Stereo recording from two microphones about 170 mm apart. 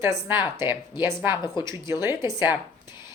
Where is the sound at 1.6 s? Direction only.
15° right (ahead or behind).